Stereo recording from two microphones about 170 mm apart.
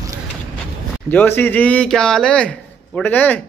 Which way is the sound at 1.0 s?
10° left (ahead or behind).